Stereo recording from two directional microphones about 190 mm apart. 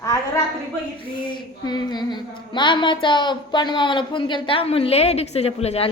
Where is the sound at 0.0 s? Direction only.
15° left (ahead or behind).